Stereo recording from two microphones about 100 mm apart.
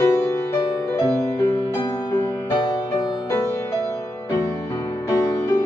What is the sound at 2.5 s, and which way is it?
Music, 40° left (ahead or behind).